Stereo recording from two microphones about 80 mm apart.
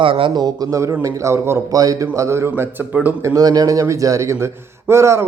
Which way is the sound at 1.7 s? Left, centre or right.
Right.